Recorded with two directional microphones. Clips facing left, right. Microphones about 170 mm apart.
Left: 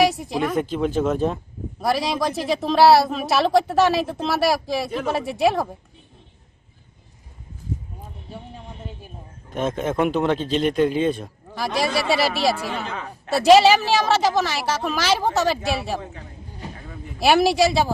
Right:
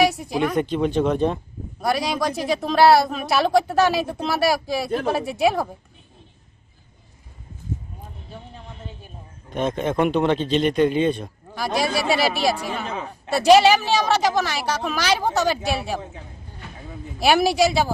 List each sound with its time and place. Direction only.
0.0 s a woman's voice: centre (ahead or behind)
9.0 s a woman's voice: 5° left (ahead or behind)
16.6 s a sound: 35° left (ahead or behind)
17.2 s a woman's voice: centre (ahead or behind)